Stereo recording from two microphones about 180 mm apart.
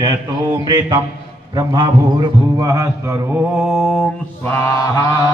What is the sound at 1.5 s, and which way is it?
Mantra, 20° right (ahead or behind).